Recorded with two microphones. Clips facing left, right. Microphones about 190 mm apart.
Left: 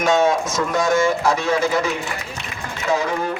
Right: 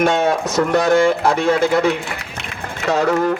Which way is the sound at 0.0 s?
60° right (ahead or behind).